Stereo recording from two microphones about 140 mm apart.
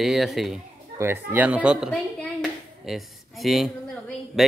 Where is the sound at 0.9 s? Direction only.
15° right (ahead or behind).